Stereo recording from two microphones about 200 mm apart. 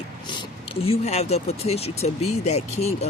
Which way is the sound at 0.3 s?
25° left (ahead or behind).